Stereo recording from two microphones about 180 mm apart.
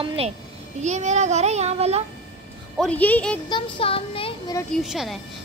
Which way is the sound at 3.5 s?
30° left (ahead or behind).